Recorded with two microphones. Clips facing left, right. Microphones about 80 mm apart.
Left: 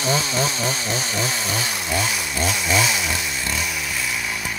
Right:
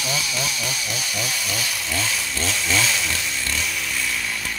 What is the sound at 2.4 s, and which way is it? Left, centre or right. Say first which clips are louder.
Chainsaw: left 3 dB; centre.